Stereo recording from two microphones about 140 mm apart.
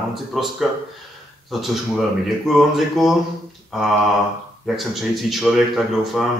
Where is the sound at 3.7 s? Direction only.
Centre (ahead or behind).